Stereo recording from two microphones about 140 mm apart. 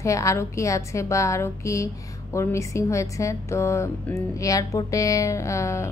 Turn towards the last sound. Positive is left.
turn(degrees=20)  # may be behind; listen again after turning